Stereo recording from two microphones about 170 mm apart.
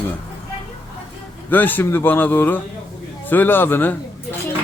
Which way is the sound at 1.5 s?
10° left (ahead or behind).